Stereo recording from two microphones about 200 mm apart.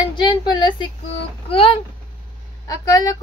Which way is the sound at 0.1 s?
25° left (ahead or behind).